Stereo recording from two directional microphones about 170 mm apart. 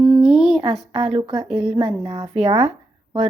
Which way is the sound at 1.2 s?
30° right (ahead or behind).